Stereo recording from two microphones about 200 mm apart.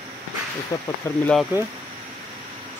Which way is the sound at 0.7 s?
20° left (ahead or behind).